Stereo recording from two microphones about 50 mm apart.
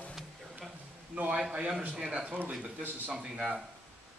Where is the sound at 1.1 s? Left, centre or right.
Right.